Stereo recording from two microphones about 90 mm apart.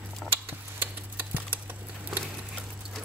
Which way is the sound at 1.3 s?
20° right (ahead or behind).